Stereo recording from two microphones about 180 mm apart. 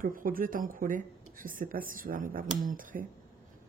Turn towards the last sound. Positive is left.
turn(degrees=-50)  # may be behind; listen again after turning